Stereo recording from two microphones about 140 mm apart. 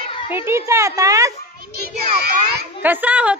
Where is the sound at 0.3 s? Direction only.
20° right (ahead or behind).